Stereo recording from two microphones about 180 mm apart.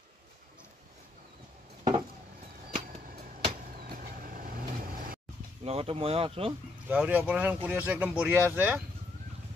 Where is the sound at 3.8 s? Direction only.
55° right (ahead or behind).